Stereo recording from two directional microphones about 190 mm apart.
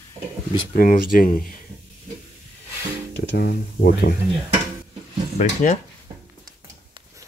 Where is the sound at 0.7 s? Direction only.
50° left (ahead or behind).